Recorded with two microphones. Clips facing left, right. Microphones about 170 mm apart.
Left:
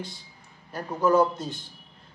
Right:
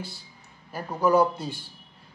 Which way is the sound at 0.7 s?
10° right (ahead or behind).